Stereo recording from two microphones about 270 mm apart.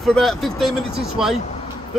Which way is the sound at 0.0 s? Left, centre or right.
Centre.